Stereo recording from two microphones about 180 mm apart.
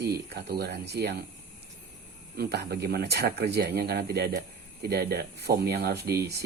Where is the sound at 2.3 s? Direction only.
60° right (ahead or behind).